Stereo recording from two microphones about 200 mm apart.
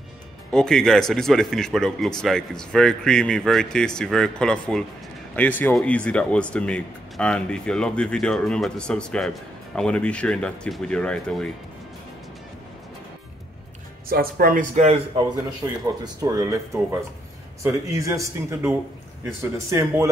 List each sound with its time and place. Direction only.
0.5 s speech: 5° left (ahead or behind)
14.0 s speech: 45° right (ahead or behind)
15.6 s speech: 10° right (ahead or behind)